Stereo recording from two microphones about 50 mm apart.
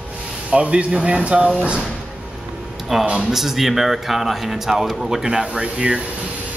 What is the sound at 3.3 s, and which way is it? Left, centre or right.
Speech, centre.